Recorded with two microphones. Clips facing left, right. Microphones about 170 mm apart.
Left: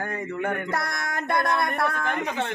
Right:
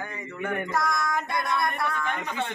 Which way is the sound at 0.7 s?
65° left (ahead or behind).